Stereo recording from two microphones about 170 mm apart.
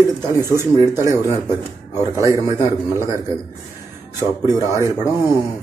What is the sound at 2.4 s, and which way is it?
Speech, 15° right (ahead or behind).